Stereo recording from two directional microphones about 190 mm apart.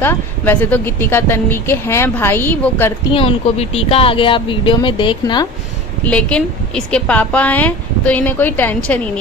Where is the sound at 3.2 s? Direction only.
30° left (ahead or behind).